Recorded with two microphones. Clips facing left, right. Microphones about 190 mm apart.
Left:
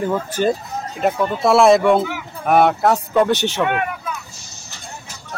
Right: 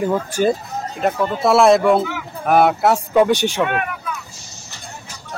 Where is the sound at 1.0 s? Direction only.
Centre (ahead or behind).